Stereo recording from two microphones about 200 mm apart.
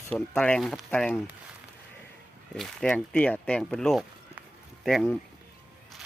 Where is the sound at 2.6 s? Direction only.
5° left (ahead or behind).